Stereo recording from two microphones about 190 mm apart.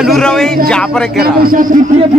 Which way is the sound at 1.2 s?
50° right (ahead or behind).